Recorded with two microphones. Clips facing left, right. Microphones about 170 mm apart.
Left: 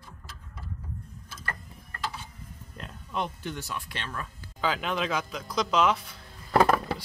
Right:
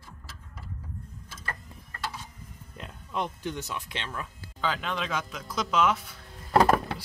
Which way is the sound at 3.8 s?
20° right (ahead or behind).